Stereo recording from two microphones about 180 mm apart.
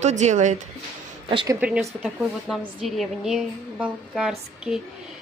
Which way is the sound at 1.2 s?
25° right (ahead or behind).